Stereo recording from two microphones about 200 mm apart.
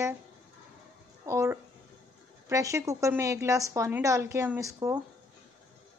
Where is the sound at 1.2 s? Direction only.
15° right (ahead or behind).